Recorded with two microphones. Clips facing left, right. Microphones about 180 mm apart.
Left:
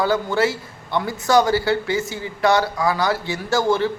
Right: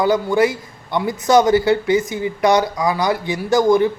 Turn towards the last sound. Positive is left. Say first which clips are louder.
# right 5 dB
turn(degrees=-15)  # may be behind; listen again after turning